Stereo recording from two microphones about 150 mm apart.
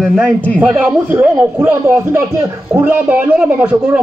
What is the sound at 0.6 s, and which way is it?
A man's voice, 10° right (ahead or behind).